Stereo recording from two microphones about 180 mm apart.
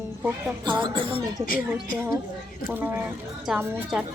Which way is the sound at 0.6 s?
25° right (ahead or behind).